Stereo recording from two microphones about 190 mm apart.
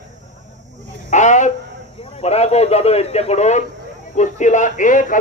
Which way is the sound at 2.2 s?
35° left (ahead or behind).